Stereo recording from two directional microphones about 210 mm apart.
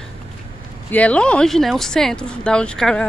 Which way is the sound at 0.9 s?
5° left (ahead or behind).